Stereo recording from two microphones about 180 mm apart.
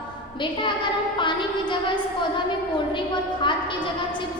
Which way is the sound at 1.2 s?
25° left (ahead or behind).